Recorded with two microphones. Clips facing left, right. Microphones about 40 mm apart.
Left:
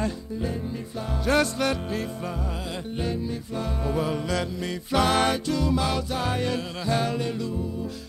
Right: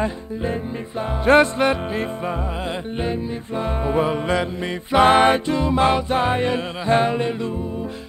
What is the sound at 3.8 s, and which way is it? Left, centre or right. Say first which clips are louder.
Music: right 6 dB; right.